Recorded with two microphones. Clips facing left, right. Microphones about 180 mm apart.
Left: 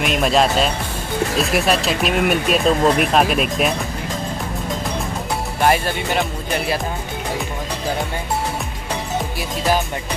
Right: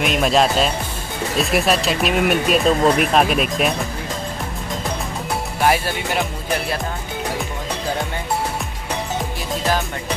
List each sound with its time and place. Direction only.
0.0 s speech: centre (ahead or behind)
5.6 s speech: centre (ahead or behind)